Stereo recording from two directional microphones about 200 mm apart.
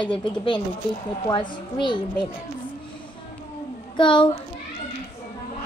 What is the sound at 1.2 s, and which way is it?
A child's voice, 25° left (ahead or behind).